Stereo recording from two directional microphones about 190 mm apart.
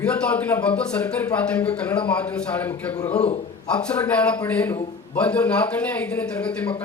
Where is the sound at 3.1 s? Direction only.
35° left (ahead or behind).